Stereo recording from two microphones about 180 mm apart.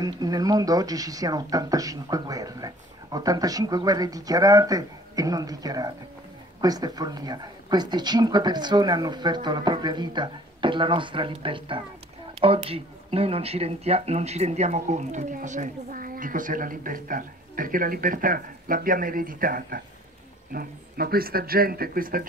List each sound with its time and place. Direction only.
0.0 s speech: 20° right (ahead or behind); by 22.2 s 50° right (ahead or behind)